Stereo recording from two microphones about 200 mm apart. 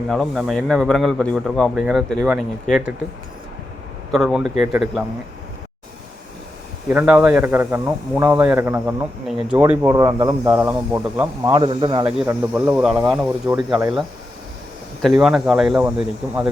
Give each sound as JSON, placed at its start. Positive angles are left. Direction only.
{"t": 0.1, "sound": "a man's voice", "side_deg": 0}
{"t": 4.1, "sound": "a man's voice", "side_deg": 0}
{"t": 6.9, "sound": "speech", "side_deg": -5}
{"t": 12.2, "sound": "speech", "side_deg": -10}
{"t": 15.2, "sound": "a man's voice", "side_deg": -5}